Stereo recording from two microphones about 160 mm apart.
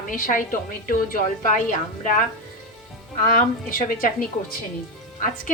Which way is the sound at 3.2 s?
60° left (ahead or behind).